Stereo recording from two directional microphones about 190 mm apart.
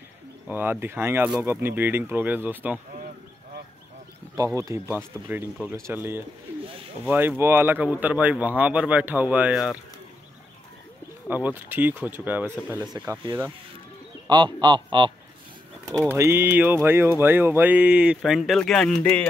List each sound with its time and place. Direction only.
0.5 s speech: 10° right (ahead or behind)
4.6 s speech: 15° right (ahead or behind)
11.2 s speech: 10° right (ahead or behind)
14.3 s speech: 25° right (ahead or behind)
15.9 s speech: 15° right (ahead or behind); by 19.2 s 5° left (ahead or behind)